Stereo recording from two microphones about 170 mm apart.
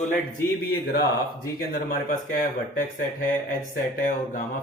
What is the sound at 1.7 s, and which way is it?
Speech, 55° left (ahead or behind).